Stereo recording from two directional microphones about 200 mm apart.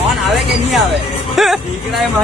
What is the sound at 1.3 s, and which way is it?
Speech, centre (ahead or behind).